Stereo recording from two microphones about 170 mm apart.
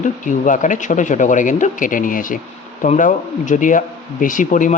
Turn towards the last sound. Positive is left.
turn(degrees=50)  # may be behind; listen again after turning